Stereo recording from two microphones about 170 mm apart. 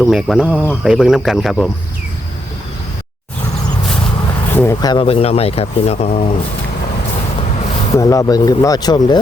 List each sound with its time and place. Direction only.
0.0 s speech: centre (ahead or behind)
4.5 s speech: 15° left (ahead or behind)
5.0 s speech: 35° left (ahead or behind)
7.9 s speech: 20° left (ahead or behind)